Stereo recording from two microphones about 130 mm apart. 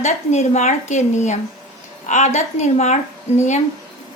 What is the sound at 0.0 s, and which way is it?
A woman's voice, 60° left (ahead or behind).